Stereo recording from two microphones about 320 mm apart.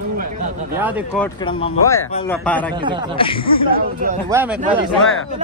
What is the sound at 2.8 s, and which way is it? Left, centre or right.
Speech, centre.